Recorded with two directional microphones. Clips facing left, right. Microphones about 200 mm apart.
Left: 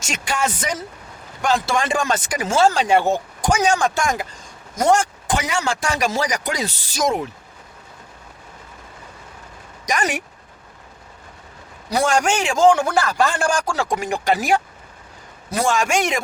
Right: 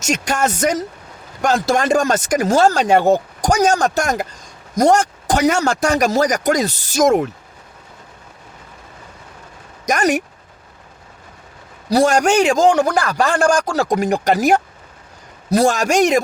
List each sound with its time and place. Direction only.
0.0 s speech: 45° right (ahead or behind)
9.8 s speech: 45° right (ahead or behind)
11.9 s speech: 40° right (ahead or behind)